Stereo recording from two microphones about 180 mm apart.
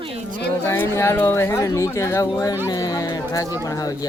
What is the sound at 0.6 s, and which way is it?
Speech, 10° left (ahead or behind).